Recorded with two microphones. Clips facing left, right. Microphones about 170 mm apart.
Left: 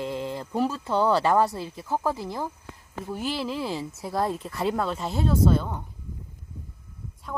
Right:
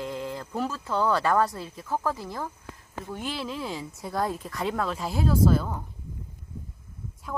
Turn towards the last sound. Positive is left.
turn(degrees=0)  # may be behind; listen again after turning